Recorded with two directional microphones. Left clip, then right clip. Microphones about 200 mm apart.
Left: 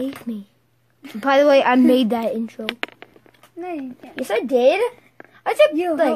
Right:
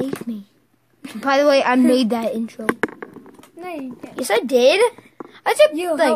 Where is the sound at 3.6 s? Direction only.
45° right (ahead or behind).